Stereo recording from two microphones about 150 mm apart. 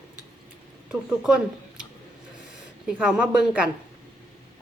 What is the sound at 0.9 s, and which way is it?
Speech, 5° right (ahead or behind).